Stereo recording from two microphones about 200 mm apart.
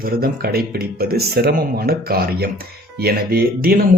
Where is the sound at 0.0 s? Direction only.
50° right (ahead or behind).